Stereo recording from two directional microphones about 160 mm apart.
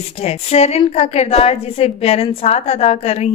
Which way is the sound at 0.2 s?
40° left (ahead or behind).